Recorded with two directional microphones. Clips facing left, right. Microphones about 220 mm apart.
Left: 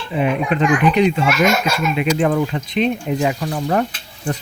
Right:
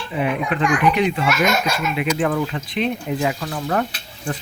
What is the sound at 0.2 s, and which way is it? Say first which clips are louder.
Speech: left 3 dB; 25° left (ahead or behind).